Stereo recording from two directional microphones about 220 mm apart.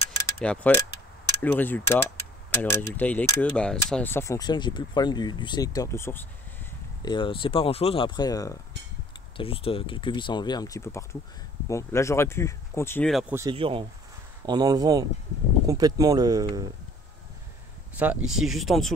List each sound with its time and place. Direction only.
0.4 s speech: 5° left (ahead or behind)
13.3 s speech: 15° right (ahead or behind)
13.6 s speech: 25° right (ahead or behind)
17.9 s speech: 5° right (ahead or behind)